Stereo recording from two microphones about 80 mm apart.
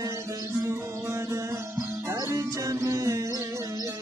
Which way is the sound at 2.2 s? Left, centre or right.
Right.